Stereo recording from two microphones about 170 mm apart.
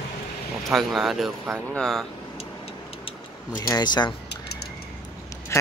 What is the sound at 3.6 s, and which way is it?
Speech, 25° left (ahead or behind).